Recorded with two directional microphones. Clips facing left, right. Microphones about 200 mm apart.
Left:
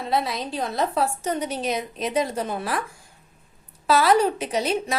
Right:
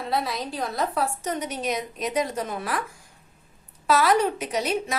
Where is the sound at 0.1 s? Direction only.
20° left (ahead or behind).